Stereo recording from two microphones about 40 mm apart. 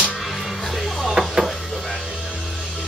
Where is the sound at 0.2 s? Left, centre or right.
Centre.